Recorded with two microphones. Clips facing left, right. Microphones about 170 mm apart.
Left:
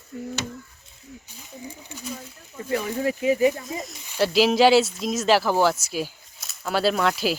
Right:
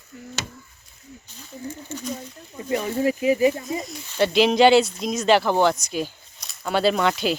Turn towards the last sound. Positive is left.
turn(degrees=0)  # may be behind; listen again after turning